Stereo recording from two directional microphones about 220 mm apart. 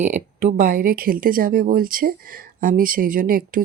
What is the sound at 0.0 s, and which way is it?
Speech, 35° right (ahead or behind).